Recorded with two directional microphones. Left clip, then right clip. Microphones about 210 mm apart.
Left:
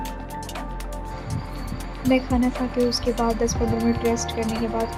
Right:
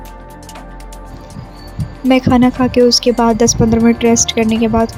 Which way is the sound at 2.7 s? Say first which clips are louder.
Right 14 dB; 45° right (ahead or behind).